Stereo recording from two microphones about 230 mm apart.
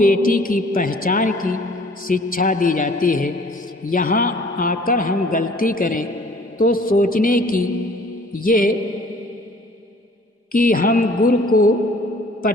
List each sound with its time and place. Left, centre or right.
0.0 s a man's voice: left
10.5 s a man's voice: left